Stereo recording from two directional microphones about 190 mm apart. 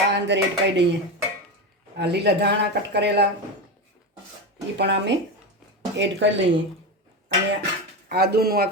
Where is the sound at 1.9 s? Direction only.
60° right (ahead or behind).